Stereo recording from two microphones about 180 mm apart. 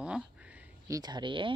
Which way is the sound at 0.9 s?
25° right (ahead or behind).